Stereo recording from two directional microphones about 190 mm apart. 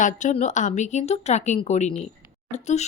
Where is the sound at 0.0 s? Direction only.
40° left (ahead or behind).